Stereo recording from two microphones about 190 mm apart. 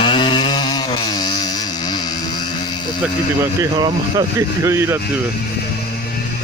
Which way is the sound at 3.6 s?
20° right (ahead or behind).